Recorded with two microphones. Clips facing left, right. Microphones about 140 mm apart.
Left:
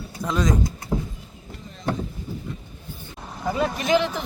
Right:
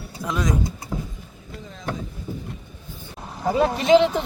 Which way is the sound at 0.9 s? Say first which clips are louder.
Left 7 dB; 30° left (ahead or behind).